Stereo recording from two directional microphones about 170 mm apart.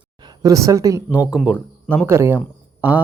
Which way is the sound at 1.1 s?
5° right (ahead or behind).